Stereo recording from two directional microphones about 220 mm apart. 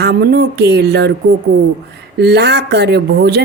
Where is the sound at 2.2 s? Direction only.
50° right (ahead or behind).